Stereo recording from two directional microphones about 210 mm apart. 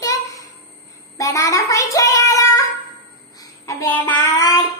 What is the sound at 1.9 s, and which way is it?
Child singing, 15° left (ahead or behind).